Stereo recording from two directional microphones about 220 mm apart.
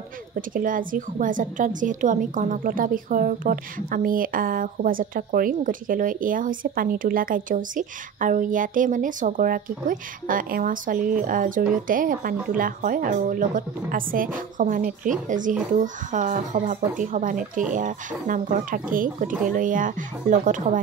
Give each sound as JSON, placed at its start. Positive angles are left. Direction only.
{"t": 0.5, "sound": "a woman's voice", "side_deg": -40}